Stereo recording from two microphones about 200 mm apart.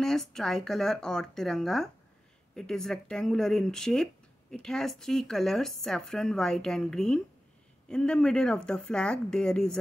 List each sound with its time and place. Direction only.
0.0 s speech: centre (ahead or behind)